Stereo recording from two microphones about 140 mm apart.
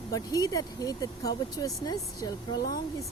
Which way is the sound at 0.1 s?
25° left (ahead or behind).